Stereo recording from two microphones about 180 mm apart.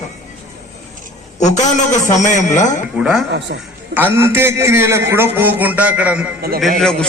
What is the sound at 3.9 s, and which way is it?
A man's voice, 10° right (ahead or behind).